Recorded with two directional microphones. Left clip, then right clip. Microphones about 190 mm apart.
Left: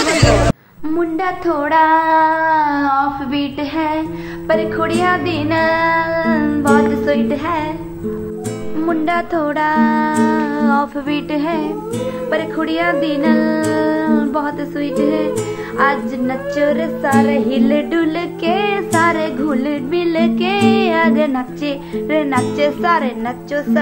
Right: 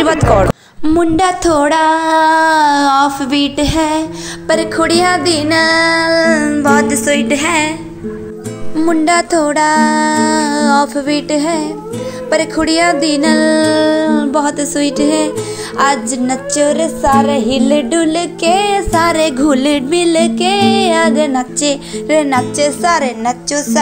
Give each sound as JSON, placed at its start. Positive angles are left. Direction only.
{"t": 0.8, "sound": "music", "side_deg": -45}
{"t": 8.7, "sound": "music", "side_deg": -30}